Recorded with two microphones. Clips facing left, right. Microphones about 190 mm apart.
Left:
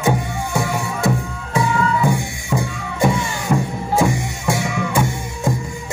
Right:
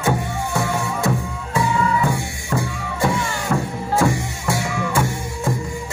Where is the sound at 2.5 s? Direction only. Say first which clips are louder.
Left 1 dB; 15° left (ahead or behind).